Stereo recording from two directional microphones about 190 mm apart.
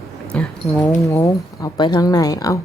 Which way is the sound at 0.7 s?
15° left (ahead or behind).